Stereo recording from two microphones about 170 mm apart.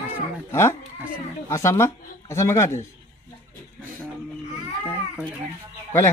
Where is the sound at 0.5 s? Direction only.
15° left (ahead or behind).